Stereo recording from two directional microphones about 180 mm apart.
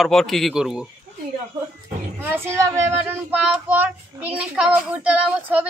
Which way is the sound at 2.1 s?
15° right (ahead or behind).